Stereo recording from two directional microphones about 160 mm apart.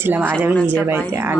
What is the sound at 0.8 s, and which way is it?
Speech, 10° right (ahead or behind).